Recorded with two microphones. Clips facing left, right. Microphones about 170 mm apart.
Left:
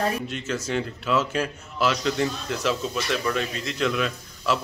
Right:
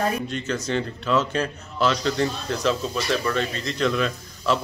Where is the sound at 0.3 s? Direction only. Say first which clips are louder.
Right 2 dB; 5° left (ahead or behind).